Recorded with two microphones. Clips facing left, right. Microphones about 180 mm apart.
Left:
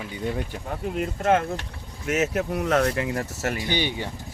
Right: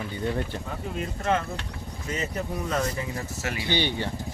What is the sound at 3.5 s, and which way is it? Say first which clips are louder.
Speech: left 3 dB; 45° left (ahead or behind).